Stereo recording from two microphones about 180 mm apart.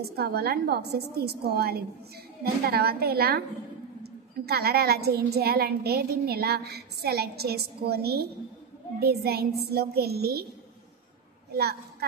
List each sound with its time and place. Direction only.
0.0 s a woman's voice: 60° right (ahead or behind)